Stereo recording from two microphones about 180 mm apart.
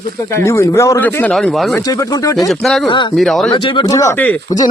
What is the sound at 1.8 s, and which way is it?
Speech, 20° left (ahead or behind).